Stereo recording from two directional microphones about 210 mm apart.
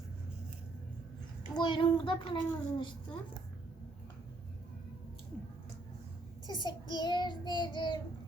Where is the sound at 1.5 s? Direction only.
20° left (ahead or behind).